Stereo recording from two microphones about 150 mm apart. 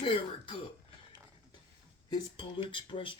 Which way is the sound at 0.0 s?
35° left (ahead or behind).